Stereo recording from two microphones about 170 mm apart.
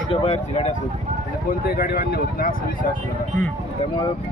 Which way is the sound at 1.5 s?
60° left (ahead or behind).